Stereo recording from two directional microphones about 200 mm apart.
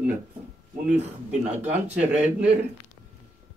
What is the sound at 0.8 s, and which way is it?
Speech, 5° right (ahead or behind).